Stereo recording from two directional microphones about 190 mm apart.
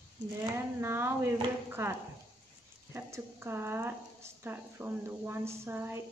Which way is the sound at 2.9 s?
15° right (ahead or behind).